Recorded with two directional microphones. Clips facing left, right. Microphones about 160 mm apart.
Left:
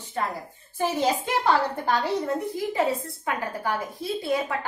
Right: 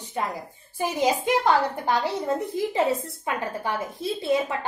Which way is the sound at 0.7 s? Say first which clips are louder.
Even; 15° right (ahead or behind).